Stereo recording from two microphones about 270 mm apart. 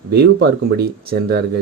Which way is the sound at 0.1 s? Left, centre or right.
Right.